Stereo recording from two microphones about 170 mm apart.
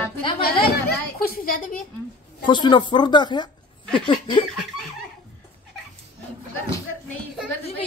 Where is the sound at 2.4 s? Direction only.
25° left (ahead or behind).